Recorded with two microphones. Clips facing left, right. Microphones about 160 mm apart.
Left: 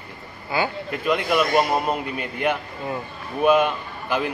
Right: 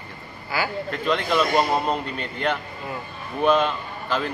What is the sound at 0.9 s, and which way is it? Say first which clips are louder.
A man's voice: even; 10° left (ahead or behind).